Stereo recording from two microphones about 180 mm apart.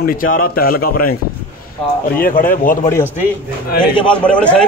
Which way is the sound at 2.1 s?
50° left (ahead or behind).